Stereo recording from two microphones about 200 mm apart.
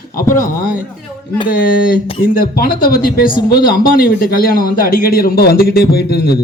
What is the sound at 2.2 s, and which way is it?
A man's voice, 45° left (ahead or behind).